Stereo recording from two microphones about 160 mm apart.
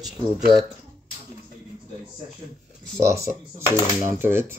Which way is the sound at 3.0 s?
20° right (ahead or behind).